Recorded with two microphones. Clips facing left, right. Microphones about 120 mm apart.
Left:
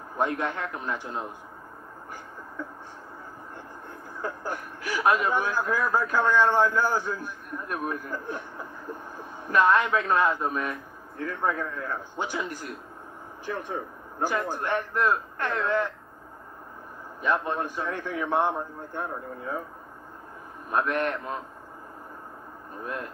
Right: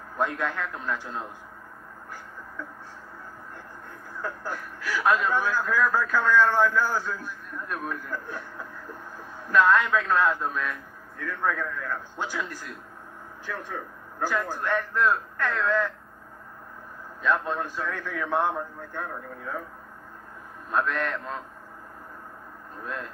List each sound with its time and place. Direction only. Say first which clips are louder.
0.2 s a man's voice: left 1 dB; 20° left (ahead or behind)
4.2 s a man's voice: left 1 dB; 20° left (ahead or behind)
17.3 s a man's voice: even; 20° left (ahead or behind)
20.7 s a man's voice: left 1 dB; 20° left (ahead or behind)